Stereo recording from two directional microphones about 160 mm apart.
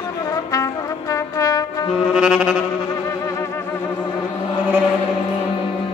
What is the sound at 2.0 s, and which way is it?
Saxophone, 5° right (ahead or behind).